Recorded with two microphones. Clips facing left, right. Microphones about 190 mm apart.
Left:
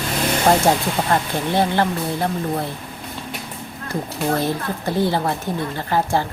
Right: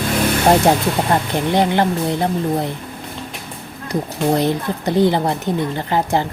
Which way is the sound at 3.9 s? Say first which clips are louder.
Right 4 dB; 20° right (ahead or behind).